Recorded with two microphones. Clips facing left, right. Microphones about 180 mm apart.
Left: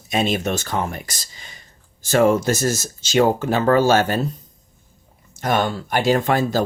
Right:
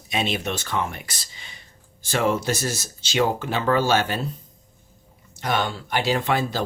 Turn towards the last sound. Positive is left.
turn(degrees=45)  # may be behind; listen again after turning